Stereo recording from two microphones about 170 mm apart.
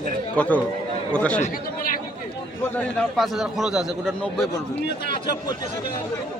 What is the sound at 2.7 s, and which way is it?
A man's voice, centre (ahead or behind).